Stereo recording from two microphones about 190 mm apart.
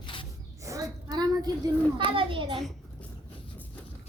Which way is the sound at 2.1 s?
25° right (ahead or behind).